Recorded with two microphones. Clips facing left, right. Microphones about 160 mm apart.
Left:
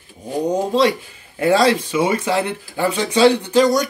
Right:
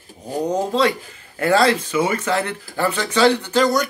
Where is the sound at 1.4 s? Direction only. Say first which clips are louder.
Left 2 dB; 15° left (ahead or behind).